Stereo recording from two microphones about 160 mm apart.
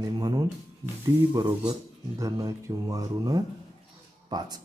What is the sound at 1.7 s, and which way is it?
Speech, 20° right (ahead or behind).